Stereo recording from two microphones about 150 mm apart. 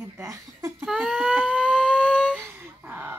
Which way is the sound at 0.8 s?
Centre (ahead or behind).